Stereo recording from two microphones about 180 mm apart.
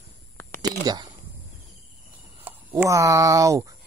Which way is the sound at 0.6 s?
20° right (ahead or behind).